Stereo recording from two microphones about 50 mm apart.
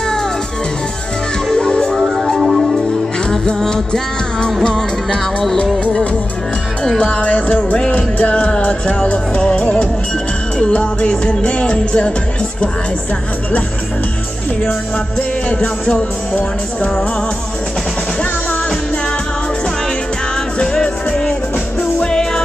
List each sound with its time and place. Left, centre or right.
1.5 s music: centre
2.0 s music: centre
7.0 s music: left
15.1 s music: left
20.6 s music: centre